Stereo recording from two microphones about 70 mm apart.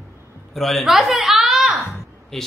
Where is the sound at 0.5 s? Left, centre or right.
Centre.